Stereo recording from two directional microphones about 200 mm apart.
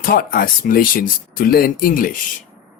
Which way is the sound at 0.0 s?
45° left (ahead or behind).